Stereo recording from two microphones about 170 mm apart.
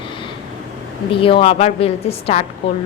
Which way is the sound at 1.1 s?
30° left (ahead or behind).